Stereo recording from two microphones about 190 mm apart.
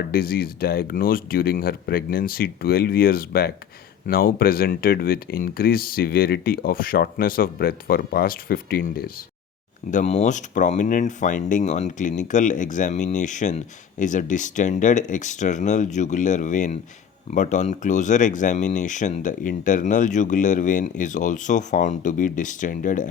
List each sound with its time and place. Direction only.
0.1 s speech: 50° left (ahead or behind)
9.9 s speech: 40° left (ahead or behind)